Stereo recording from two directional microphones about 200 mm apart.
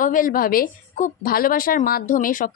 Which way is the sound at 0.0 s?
45° left (ahead or behind).